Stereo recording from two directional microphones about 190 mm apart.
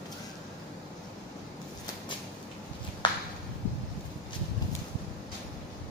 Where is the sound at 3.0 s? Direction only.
25° left (ahead or behind).